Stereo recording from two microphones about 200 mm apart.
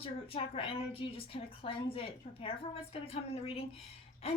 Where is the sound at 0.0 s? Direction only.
30° left (ahead or behind).